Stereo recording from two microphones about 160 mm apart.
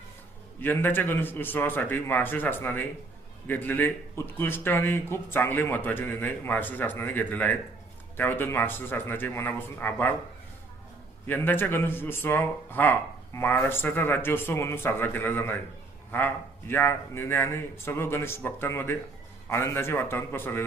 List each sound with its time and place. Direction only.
0.6 s speech: 10° left (ahead or behind)
11.3 s speech: 10° left (ahead or behind)